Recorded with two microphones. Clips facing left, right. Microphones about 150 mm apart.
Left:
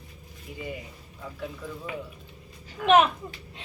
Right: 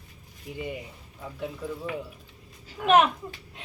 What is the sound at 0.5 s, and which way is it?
Speech, 20° right (ahead or behind).